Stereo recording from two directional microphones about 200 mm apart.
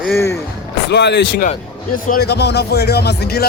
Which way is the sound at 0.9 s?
60° left (ahead or behind).